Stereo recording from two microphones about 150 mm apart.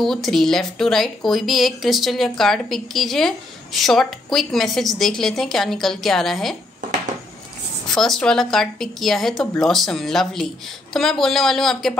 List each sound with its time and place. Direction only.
0.0 s speech: centre (ahead or behind)
7.9 s speech: 5° left (ahead or behind)